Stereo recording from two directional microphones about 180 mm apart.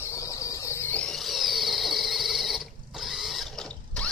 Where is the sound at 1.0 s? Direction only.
Centre (ahead or behind).